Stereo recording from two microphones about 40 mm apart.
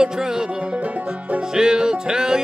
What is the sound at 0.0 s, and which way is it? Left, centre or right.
Music, centre.